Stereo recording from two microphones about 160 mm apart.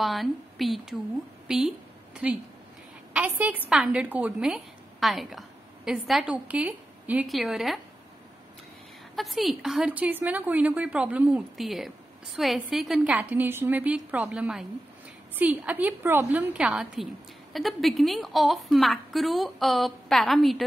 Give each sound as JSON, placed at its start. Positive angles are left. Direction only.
{"t": 0.0, "sound": "a woman's voice", "side_deg": 0}
{"t": 9.1, "sound": "a woman's voice", "side_deg": 0}